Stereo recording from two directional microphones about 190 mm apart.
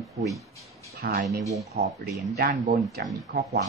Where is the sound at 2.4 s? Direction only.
45° right (ahead or behind).